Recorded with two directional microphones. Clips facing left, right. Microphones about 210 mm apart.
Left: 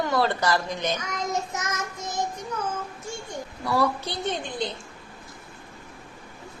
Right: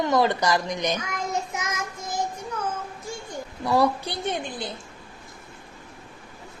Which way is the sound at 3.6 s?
15° right (ahead or behind).